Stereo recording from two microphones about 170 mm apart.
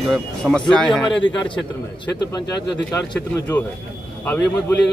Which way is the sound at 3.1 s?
20° left (ahead or behind).